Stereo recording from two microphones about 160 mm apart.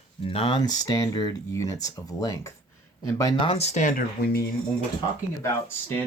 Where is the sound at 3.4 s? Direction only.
40° left (ahead or behind).